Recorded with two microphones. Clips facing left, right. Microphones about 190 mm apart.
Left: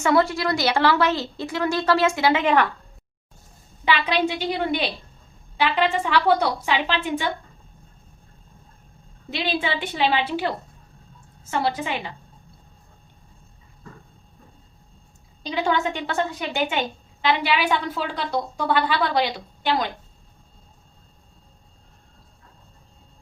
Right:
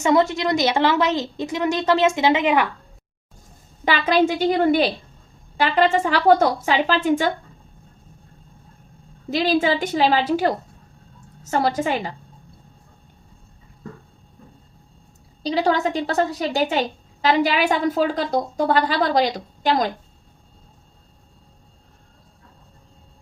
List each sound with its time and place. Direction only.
0.0 s a woman's voice: 20° right (ahead or behind)
3.8 s a woman's voice: 45° right (ahead or behind)
9.3 s a woman's voice: 40° right (ahead or behind)
15.4 s a woman's voice: 35° right (ahead or behind)